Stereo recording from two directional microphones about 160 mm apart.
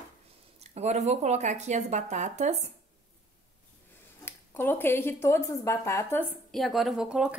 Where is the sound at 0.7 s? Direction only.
45° right (ahead or behind).